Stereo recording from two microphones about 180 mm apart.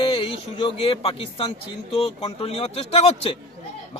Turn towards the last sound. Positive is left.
turn(degrees=35)  # may be behind; listen again after turning